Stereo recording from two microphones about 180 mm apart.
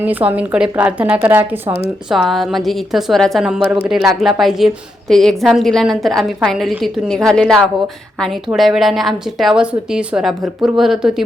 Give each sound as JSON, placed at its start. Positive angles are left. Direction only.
{"t": 0.0, "sound": "a woman's voice", "side_deg": -10}
{"t": 2.0, "sound": "a woman's voice", "side_deg": 0}